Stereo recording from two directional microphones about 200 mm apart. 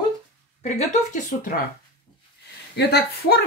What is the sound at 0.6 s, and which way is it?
Speech, 35° left (ahead or behind).